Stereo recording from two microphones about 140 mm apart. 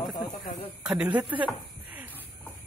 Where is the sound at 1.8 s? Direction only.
10° right (ahead or behind).